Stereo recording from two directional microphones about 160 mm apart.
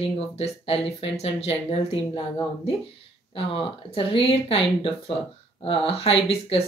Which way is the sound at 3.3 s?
30° left (ahead or behind).